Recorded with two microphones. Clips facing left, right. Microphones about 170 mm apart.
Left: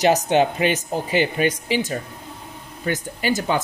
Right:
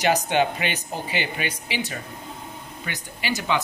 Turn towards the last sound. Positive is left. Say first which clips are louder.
# left 4 dB
turn(degrees=45)  # may be behind; listen again after turning